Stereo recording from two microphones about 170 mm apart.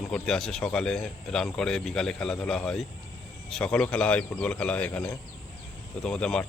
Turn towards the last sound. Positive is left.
turn(degrees=5)  # may be behind; listen again after turning